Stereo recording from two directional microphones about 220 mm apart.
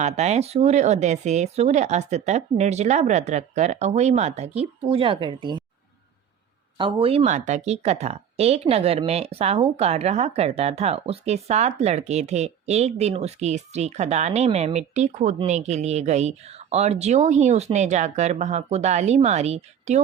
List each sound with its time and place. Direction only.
0.0 s speech: 30° right (ahead or behind)
6.7 s speech: 25° right (ahead or behind)